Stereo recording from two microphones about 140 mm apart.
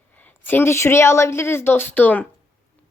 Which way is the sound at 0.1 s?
10° left (ahead or behind).